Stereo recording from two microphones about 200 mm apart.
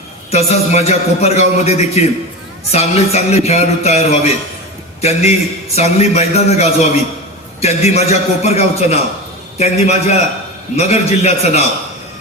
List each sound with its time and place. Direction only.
0.3 s a man's voice: 30° left (ahead or behind)